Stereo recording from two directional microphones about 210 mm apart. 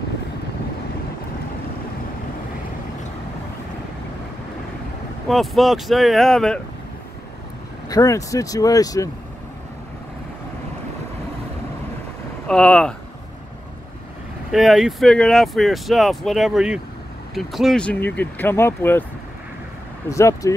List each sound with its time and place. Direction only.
5.3 s speech: centre (ahead or behind)
7.9 s speech: 15° left (ahead or behind)
12.4 s speech: 5° left (ahead or behind)
14.5 s speech: centre (ahead or behind)
20.1 s speech: 15° left (ahead or behind)